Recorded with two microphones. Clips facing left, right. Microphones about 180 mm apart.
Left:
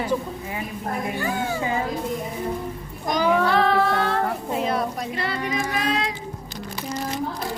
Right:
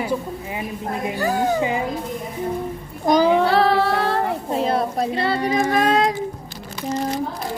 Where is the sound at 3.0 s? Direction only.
30° right (ahead or behind).